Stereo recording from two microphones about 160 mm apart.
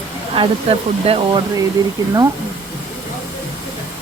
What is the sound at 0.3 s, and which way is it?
Speech, 35° right (ahead or behind).